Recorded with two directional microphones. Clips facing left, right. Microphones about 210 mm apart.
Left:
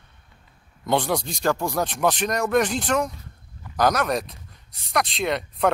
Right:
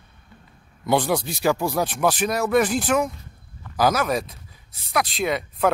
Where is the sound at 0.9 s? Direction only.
5° right (ahead or behind).